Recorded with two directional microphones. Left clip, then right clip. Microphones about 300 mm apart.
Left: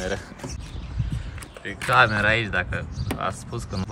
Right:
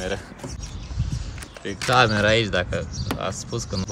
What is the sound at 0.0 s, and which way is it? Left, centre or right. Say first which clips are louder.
Speech: even; centre.